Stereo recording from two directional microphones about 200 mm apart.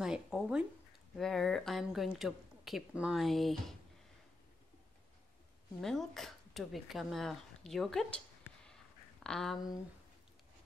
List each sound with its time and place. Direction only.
0.0 s speech: centre (ahead or behind)
5.8 s speech: centre (ahead or behind)
9.2 s speech: 5° left (ahead or behind)